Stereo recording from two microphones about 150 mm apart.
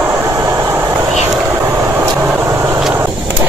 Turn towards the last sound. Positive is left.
turn(degrees=-15)  # may be behind; listen again after turning